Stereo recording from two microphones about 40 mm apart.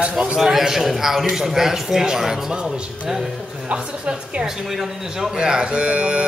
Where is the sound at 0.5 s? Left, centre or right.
Centre.